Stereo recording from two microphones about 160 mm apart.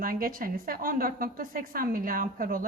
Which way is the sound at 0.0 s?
65° right (ahead or behind).